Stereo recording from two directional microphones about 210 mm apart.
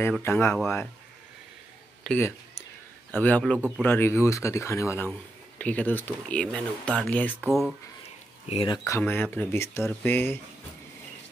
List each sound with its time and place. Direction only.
0.0 s speech: 10° left (ahead or behind)
2.0 s speech: 10° left (ahead or behind)
3.5 s speech: 10° right (ahead or behind)
3.8 s speech: 10° left (ahead or behind)
8.5 s speech: 25° left (ahead or behind)